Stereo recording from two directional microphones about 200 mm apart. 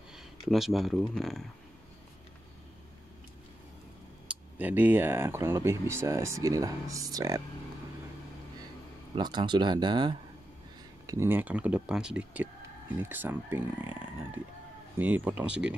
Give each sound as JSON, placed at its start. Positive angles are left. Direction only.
{"t": 0.1, "sound": "speech", "side_deg": 0}
{"t": 4.3, "sound": "speech", "side_deg": -10}
{"t": 9.1, "sound": "speech", "side_deg": -25}
{"t": 11.1, "sound": "speech", "side_deg": -10}
{"t": 15.0, "sound": "speech", "side_deg": -10}